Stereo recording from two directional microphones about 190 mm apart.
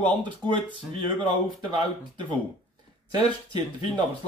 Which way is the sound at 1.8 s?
25° right (ahead or behind).